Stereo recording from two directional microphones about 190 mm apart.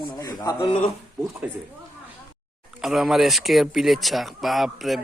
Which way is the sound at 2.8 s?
Centre (ahead or behind).